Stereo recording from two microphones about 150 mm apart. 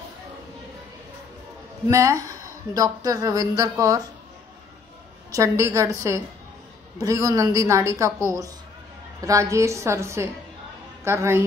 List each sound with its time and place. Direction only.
1.9 s speech: 20° right (ahead or behind)
5.3 s a woman's voice: 20° right (ahead or behind)